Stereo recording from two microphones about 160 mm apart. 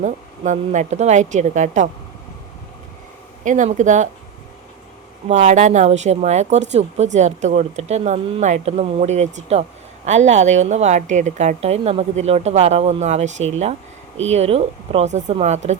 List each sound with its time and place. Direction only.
0.0 s speech: 50° right (ahead or behind)
3.4 s speech: 50° right (ahead or behind)
5.3 s speech: 45° right (ahead or behind)